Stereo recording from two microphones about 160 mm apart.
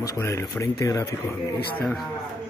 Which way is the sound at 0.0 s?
20° left (ahead or behind).